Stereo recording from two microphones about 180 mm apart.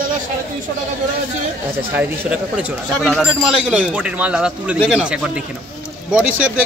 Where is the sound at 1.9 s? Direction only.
5° right (ahead or behind).